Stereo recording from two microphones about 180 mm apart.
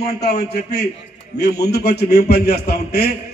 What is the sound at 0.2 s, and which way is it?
A man's voice, 65° left (ahead or behind).